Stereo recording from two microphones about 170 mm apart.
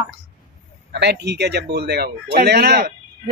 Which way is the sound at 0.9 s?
85° right.